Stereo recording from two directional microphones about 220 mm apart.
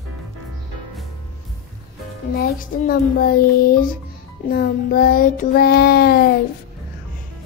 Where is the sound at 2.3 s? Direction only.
40° left (ahead or behind).